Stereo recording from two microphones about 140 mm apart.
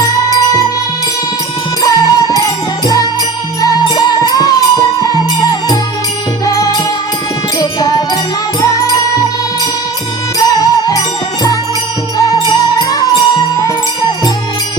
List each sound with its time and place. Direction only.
1.8 s music: 30° left (ahead or behind)
10.3 s music: 25° left (ahead or behind)
12.1 s music: 30° left (ahead or behind)